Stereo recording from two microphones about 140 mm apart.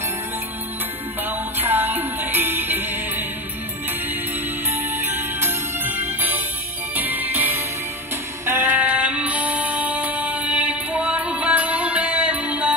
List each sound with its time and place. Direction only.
1.2 s music: 15° right (ahead or behind)
4.6 s music: 15° right (ahead or behind)